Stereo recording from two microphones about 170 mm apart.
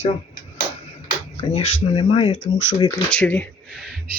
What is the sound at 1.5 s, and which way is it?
Speech, 35° left (ahead or behind).